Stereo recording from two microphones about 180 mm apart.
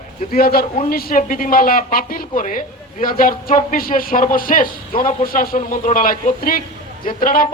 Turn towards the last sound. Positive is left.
turn(degrees=50)  # may be behind; listen again after turning